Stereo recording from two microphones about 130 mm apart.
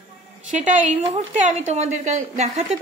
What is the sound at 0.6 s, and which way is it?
A woman's voice, 70° right (ahead or behind).